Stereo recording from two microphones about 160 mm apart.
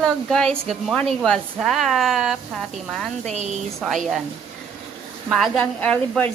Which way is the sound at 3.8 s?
Centre (ahead or behind).